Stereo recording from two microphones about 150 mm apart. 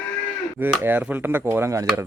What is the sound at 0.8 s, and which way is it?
Speech, 15° right (ahead or behind).